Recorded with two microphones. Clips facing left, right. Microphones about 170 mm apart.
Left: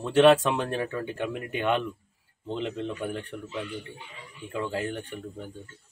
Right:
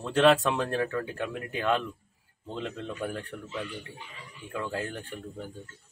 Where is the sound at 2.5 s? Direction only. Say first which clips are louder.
Left 4 dB; 20° left (ahead or behind).